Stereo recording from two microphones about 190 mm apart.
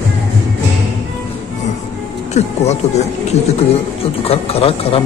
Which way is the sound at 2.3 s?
35° left (ahead or behind).